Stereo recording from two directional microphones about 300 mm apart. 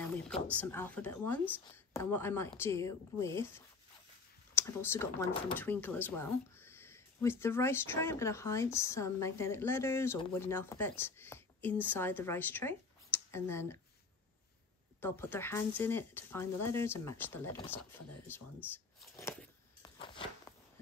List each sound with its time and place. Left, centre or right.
0.5 s speech: centre
15.0 s speech: centre
19.8 s a sound: centre